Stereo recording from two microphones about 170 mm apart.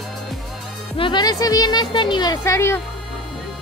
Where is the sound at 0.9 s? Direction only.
30° left (ahead or behind).